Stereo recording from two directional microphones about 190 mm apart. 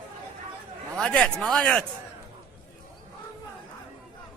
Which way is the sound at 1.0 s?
5° left (ahead or behind).